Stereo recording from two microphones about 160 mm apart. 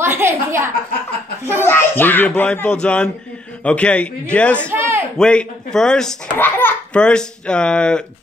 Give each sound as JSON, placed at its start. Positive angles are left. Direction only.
{"t": 0.0, "sound": "a woman's voice", "side_deg": -15}
{"t": 1.6, "sound": "a child's voice", "side_deg": 15}
{"t": 4.6, "sound": "a sound", "side_deg": -15}
{"t": 5.1, "sound": "a child's voice", "side_deg": 5}